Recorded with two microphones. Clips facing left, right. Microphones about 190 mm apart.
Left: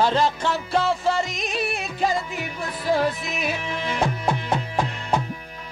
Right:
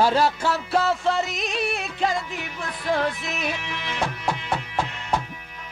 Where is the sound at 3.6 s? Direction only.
35° left (ahead or behind).